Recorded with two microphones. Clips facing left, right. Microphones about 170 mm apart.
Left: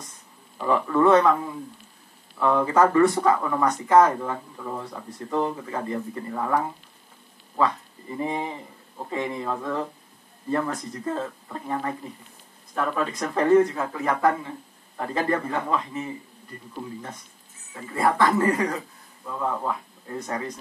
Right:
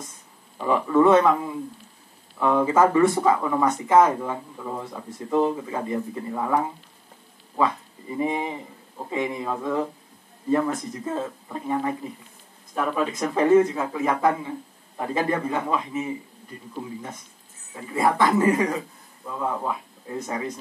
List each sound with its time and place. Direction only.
0.6 s speech: 15° right (ahead or behind)
3.6 s speech: 20° right (ahead or behind)
4.1 s speech: 10° right (ahead or behind)
17.7 s speech: 15° right (ahead or behind)